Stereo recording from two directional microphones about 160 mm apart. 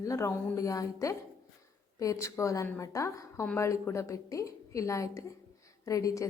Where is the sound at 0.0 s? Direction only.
20° left (ahead or behind).